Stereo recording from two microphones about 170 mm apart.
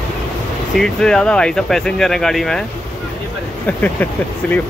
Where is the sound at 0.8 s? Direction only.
5° left (ahead or behind).